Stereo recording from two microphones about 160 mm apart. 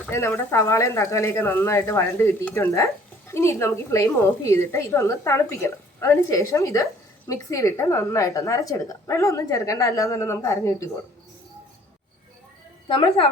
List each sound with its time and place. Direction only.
0.1 s a woman's voice: 15° left (ahead or behind)